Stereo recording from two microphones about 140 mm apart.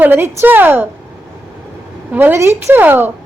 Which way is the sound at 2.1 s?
15° right (ahead or behind).